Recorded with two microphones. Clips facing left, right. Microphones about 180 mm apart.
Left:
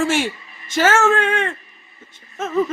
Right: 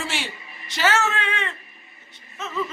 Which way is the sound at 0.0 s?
50° left (ahead or behind).